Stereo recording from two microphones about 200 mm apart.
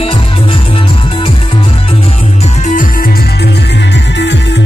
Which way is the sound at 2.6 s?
40° left (ahead or behind).